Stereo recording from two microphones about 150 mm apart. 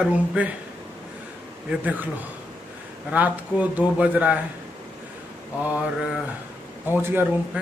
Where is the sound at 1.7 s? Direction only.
10° right (ahead or behind).